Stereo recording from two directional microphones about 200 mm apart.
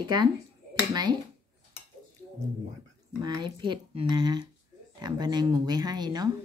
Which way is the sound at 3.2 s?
20° right (ahead or behind).